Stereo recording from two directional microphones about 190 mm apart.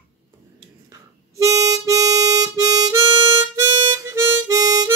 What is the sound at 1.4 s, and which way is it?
Harmonica, 15° right (ahead or behind).